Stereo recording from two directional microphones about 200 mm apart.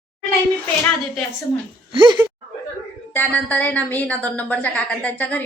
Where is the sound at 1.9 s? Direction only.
25° right (ahead or behind).